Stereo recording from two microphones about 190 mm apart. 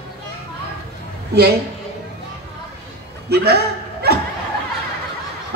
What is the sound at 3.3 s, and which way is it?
Speech, 55° right (ahead or behind).